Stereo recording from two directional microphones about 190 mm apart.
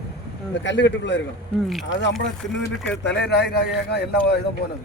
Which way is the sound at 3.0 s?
65° left (ahead or behind).